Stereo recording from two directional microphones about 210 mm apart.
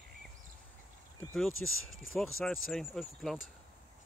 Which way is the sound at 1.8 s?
Centre (ahead or behind).